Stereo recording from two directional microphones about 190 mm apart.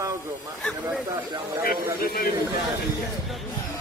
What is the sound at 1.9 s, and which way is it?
Speech, 55° left (ahead or behind).